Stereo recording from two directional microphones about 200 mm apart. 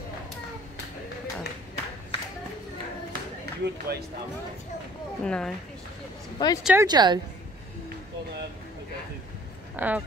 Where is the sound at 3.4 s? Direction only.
55° right (ahead or behind).